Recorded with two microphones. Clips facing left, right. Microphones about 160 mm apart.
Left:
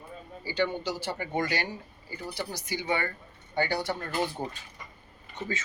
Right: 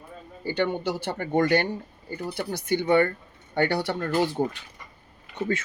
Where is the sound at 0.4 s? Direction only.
55° right (ahead or behind).